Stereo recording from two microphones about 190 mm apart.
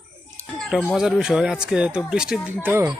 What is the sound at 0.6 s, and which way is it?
A child's voice, centre (ahead or behind).